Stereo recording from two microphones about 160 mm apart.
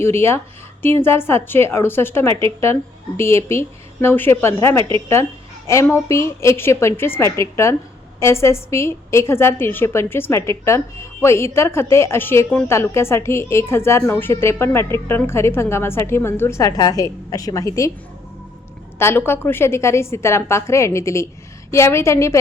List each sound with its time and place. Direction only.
0.0 s a woman's voice: 15° left (ahead or behind)
18.9 s a woman's voice: 15° left (ahead or behind)